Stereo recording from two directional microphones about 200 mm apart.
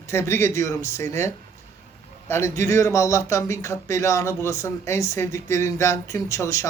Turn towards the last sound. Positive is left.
turn(degrees=15)  # may be behind; listen again after turning